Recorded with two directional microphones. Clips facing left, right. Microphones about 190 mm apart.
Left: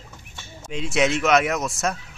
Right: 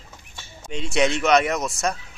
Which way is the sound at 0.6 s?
Centre (ahead or behind).